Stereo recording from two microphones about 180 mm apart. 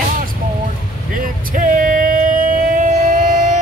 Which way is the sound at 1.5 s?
50° right (ahead or behind).